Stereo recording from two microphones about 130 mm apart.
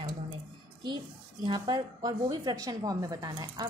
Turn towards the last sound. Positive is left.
turn(degrees=-30)  # may be behind; listen again after turning